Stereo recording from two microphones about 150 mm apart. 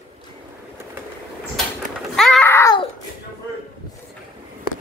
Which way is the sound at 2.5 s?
15° left (ahead or behind).